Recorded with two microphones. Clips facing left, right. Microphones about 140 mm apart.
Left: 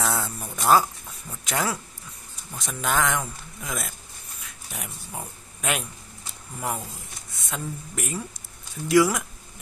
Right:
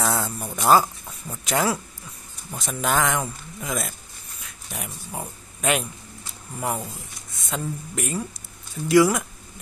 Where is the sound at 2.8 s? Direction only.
5° right (ahead or behind).